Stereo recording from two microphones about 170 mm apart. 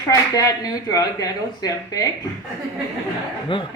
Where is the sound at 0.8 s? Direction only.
20° left (ahead or behind).